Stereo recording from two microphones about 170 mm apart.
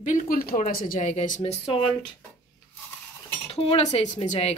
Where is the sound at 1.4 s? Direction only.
35° left (ahead or behind).